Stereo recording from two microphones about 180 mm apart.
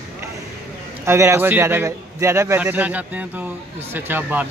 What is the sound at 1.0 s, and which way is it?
A man's voice, 15° right (ahead or behind).